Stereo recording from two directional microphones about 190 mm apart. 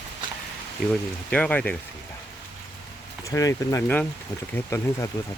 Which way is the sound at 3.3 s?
15° left (ahead or behind).